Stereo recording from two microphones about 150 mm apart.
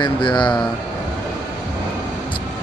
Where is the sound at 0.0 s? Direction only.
30° left (ahead or behind).